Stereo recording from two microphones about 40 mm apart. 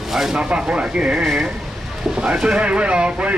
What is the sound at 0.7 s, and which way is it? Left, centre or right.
Speech, right.